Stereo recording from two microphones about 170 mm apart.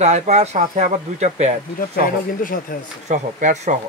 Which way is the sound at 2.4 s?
55° left (ahead or behind).